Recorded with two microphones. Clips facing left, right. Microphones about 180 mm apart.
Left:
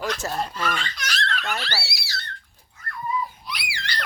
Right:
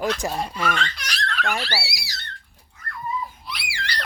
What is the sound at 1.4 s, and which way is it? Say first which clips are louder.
Speech: right 3 dB; 10° right (ahead or behind).